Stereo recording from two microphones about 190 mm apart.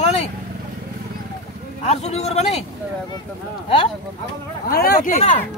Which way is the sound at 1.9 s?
35° left (ahead or behind).